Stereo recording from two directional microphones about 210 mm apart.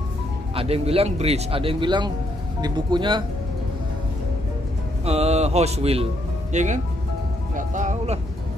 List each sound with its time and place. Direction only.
0.6 s speech: 30° right (ahead or behind)
5.0 s speech: 30° right (ahead or behind)